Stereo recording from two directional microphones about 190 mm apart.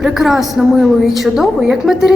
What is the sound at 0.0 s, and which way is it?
A woman's voice, centre (ahead or behind).